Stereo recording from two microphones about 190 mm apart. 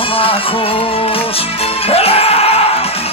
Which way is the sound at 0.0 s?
30° left (ahead or behind).